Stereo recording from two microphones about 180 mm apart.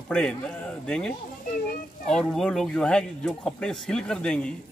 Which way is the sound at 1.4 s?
50° left (ahead or behind).